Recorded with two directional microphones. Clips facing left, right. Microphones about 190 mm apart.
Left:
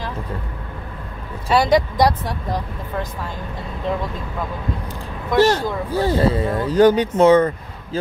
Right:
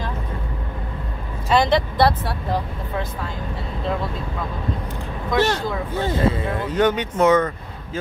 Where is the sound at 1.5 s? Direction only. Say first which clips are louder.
Left 2 dB; 10° left (ahead or behind).